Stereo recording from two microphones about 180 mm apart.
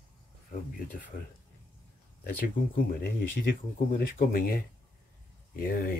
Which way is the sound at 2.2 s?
55° left (ahead or behind).